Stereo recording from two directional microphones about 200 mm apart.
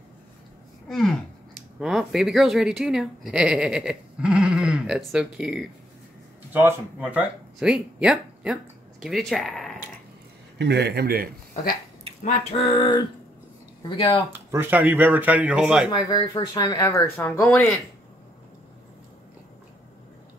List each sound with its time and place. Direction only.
0.8 s speech: centre (ahead or behind)
10.6 s a man's voice: 55° right (ahead or behind)
12.2 s speech: 35° left (ahead or behind)
14.3 s speech: 10° right (ahead or behind)
15.9 s speech: 20° left (ahead or behind)